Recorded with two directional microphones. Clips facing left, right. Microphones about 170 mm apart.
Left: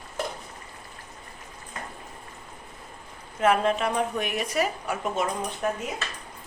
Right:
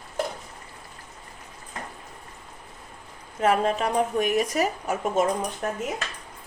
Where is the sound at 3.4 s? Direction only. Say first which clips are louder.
Even; 40° right (ahead or behind).